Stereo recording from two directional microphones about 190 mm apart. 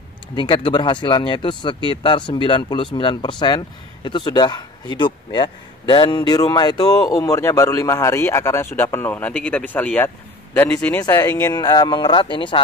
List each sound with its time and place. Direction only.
0.4 s speech: 25° left (ahead or behind); by 11.1 s 10° left (ahead or behind)
11.1 s speech: 20° left (ahead or behind)